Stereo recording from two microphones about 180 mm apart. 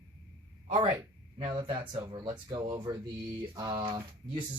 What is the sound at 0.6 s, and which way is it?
Speech, 30° right (ahead or behind).